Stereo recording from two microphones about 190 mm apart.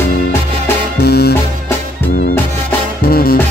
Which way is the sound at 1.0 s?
55° left (ahead or behind).